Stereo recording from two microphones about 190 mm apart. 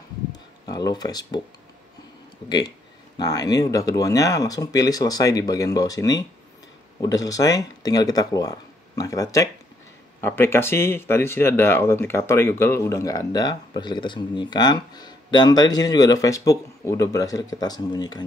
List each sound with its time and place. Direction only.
0.7 s speech: 20° left (ahead or behind)
3.2 s speech: 20° left (ahead or behind)